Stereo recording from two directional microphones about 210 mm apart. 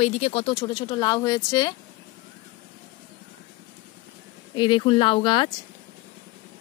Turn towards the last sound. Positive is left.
turn(degrees=25)  # may be behind; listen again after turning